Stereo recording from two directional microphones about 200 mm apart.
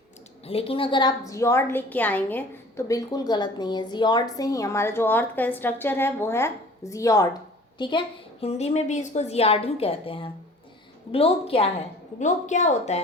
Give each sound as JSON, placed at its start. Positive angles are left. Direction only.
{"t": 0.4, "sound": "a woman's voice", "side_deg": 30}